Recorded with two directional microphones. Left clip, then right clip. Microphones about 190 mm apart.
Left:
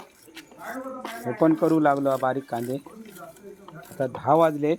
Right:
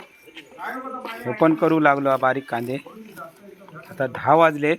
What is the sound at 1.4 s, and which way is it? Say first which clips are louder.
Speech: right 3 dB; centre (ahead or behind).